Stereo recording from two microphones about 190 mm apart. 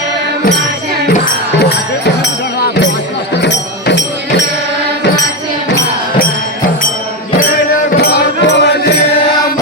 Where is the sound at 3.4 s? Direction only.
65° left (ahead or behind).